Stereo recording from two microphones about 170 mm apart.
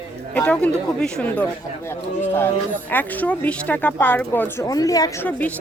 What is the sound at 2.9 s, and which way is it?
A woman's voice, 10° left (ahead or behind).